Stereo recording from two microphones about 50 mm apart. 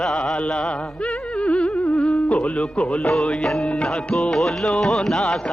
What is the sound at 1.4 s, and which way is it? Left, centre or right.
Music, left.